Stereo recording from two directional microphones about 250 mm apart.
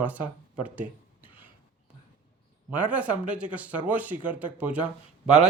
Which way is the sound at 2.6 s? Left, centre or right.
Centre.